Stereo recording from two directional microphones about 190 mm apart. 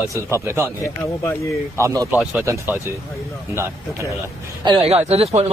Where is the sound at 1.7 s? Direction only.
15° right (ahead or behind).